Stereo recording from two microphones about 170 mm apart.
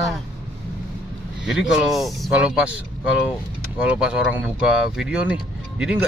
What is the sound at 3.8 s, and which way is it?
Speech, 5° right (ahead or behind).